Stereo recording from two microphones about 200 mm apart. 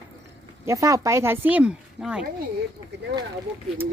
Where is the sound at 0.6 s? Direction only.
15° right (ahead or behind).